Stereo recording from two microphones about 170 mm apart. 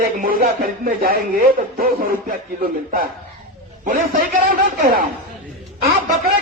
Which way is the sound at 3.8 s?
50° right (ahead or behind).